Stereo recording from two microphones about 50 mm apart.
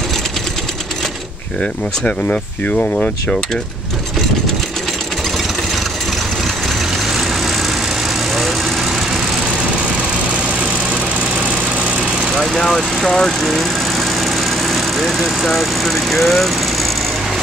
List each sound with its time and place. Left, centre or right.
1.6 s speech: left
7.1 s vehicle: centre
10.6 s lawn mower: right
12.0 s lawn mower: centre
12.4 s speech: centre